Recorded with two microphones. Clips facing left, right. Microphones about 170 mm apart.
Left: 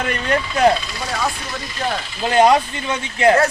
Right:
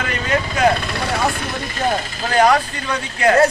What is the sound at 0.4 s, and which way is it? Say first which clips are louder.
Speech: left 2 dB; 55° right (ahead or behind).